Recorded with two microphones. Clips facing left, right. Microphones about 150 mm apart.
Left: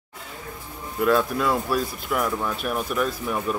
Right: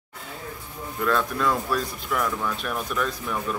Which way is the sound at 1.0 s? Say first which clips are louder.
Left 3 dB; 10° left (ahead or behind).